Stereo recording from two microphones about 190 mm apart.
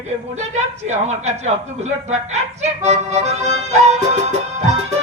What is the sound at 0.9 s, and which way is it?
Speech, 35° right (ahead or behind).